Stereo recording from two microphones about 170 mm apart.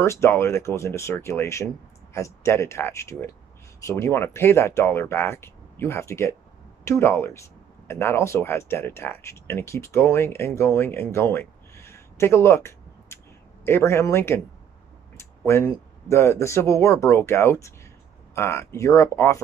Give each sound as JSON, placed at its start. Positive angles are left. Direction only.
{"t": 0.0, "sound": "speech", "side_deg": 15}
{"t": 15.1, "sound": "a sound", "side_deg": 15}
{"t": 16.1, "sound": "speech", "side_deg": 15}